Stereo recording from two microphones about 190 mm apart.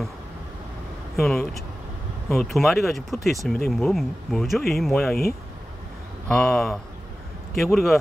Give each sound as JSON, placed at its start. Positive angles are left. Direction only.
{"t": 1.2, "sound": "speech", "side_deg": 0}
{"t": 6.2, "sound": "speech", "side_deg": 0}